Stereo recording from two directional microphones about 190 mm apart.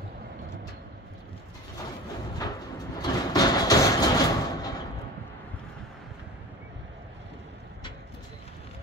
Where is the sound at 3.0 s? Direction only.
20° left (ahead or behind).